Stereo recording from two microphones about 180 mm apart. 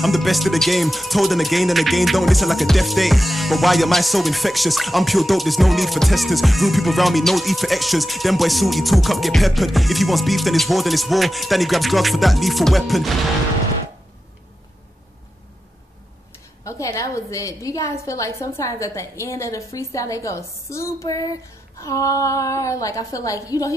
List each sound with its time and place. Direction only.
0.0 s speech: centre (ahead or behind)
16.6 s a woman's voice: 15° left (ahead or behind)